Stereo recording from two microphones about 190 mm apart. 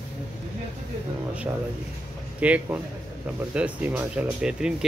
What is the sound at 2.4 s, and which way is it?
A man's voice, 5° right (ahead or behind).